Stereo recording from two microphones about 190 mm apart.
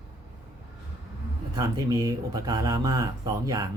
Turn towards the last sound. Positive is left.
turn(degrees=-20)  # may be behind; listen again after turning